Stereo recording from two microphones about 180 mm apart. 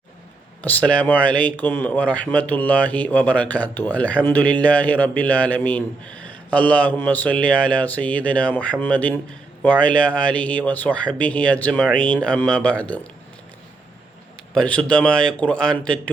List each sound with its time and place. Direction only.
0.6 s a man's voice: 10° left (ahead or behind)
14.5 s speech: 5° left (ahead or behind)